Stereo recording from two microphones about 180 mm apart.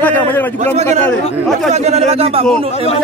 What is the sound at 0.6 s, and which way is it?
Speech, 40° right (ahead or behind).